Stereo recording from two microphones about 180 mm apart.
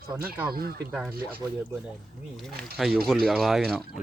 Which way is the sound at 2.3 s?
Centre (ahead or behind).